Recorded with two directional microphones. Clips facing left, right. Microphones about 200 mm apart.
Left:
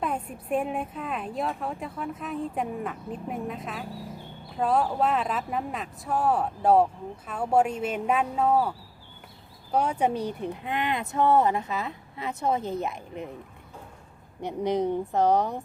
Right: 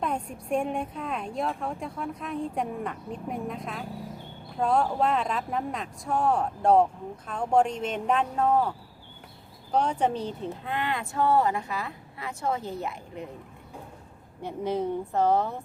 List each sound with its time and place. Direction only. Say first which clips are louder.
0.0 s a woman's voice: even; 5° left (ahead or behind)
9.7 s speech: even; 10° left (ahead or behind)
14.4 s a woman's voice: left 3 dB; 15° left (ahead or behind)